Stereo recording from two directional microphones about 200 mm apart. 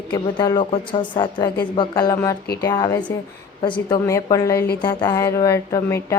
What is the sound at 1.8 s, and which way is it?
Speech, 20° left (ahead or behind).